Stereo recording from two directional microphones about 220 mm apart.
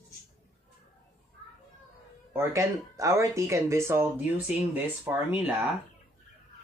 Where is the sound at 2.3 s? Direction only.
15° right (ahead or behind).